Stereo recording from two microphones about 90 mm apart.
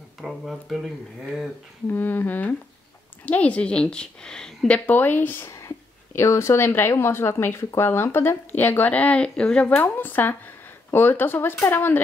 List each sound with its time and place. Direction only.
0.2 s speech: centre (ahead or behind)
1.9 s a woman's voice: 20° left (ahead or behind)